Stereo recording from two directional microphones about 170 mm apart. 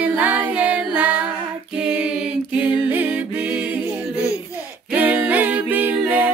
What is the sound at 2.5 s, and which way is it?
A capella, 10° right (ahead or behind).